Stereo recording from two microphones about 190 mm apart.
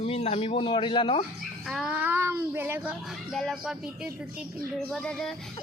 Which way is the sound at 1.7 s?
5° right (ahead or behind).